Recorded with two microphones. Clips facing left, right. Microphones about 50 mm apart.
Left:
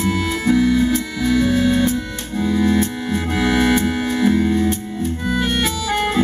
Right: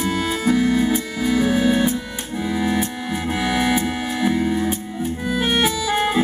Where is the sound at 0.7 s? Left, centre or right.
Centre.